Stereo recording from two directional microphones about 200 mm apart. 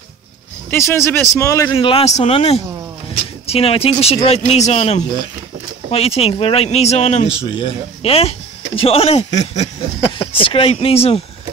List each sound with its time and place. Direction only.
0.7 s speech: 15° left (ahead or behind); by 9.2 s 30° left (ahead or behind)
9.3 s speech: 20° left (ahead or behind)